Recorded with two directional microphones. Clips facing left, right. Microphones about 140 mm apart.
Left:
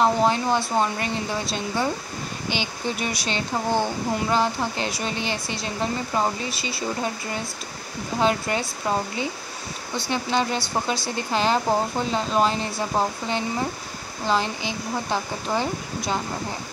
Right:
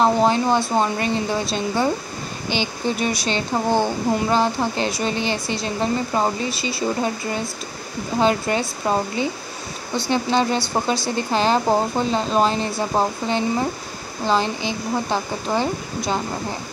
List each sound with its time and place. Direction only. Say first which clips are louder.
0.0 s speech: right 3 dB; 25° right (ahead or behind)